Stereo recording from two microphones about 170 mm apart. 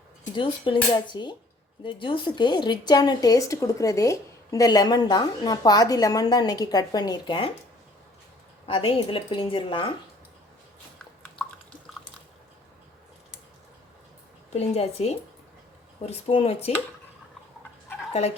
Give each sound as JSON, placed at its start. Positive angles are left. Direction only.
{"t": 0.3, "sound": "a woman's voice", "side_deg": 30}
{"t": 8.6, "sound": "a woman's voice", "side_deg": 30}
{"t": 14.5, "sound": "a woman's voice", "side_deg": 40}